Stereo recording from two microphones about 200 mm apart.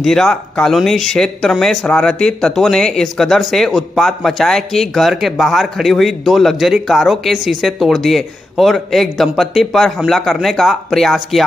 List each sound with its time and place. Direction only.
0.0 s speech: centre (ahead or behind)